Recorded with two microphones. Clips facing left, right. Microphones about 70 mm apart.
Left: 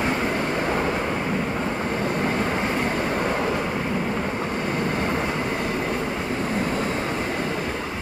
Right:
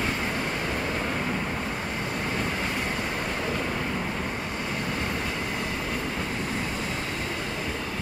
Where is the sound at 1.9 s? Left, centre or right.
Left.